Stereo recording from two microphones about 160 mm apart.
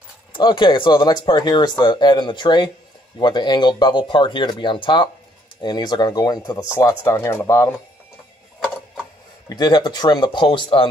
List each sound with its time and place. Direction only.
0.3 s speech: 25° left (ahead or behind)
9.5 s speech: 25° left (ahead or behind)